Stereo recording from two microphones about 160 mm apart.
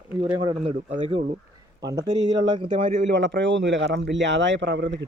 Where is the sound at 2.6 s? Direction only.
45° right (ahead or behind).